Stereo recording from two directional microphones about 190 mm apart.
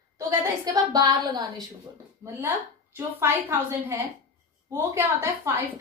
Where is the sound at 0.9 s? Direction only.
20° right (ahead or behind).